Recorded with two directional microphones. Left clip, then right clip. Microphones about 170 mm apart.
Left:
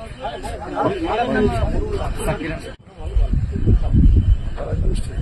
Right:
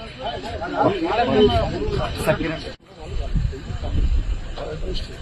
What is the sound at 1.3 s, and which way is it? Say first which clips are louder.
Speech: right 3 dB; 50° right (ahead or behind).